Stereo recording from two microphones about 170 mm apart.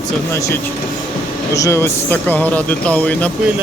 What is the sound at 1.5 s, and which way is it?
Speech, 15° left (ahead or behind).